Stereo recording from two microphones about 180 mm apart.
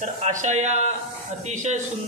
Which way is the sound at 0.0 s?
45° right (ahead or behind).